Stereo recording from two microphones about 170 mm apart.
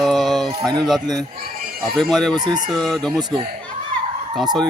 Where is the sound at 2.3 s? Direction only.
25° right (ahead or behind).